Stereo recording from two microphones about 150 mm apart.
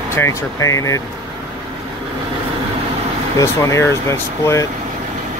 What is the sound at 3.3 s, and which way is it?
Speech, 20° left (ahead or behind).